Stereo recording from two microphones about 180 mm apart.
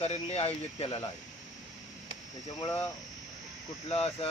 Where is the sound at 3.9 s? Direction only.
35° left (ahead or behind).